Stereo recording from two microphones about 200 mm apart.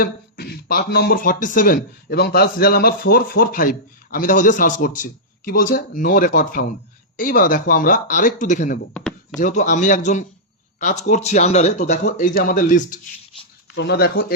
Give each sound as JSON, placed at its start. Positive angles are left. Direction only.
{"t": 0.0, "sound": "a man's voice", "side_deg": 50}
{"t": 8.9, "sound": "a sound", "side_deg": 5}
{"t": 9.4, "sound": "a man's voice", "side_deg": 40}
{"t": 13.7, "sound": "speech", "side_deg": 55}